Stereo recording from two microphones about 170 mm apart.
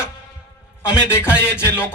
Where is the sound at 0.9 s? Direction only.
5° right (ahead or behind).